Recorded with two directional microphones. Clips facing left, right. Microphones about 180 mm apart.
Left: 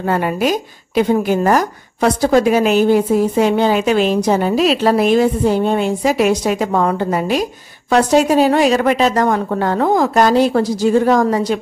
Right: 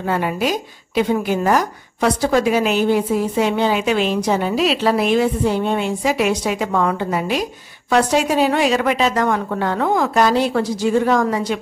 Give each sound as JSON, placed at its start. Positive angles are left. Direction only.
{"t": 0.0, "sound": "a woman's voice", "side_deg": 45}